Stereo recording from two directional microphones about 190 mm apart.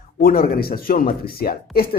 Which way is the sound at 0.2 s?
50° left (ahead or behind).